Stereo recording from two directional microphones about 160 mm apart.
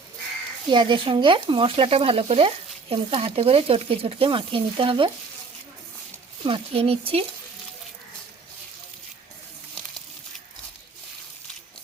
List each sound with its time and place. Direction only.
0.7 s speech: 30° right (ahead or behind)
6.4 s speech: 35° right (ahead or behind)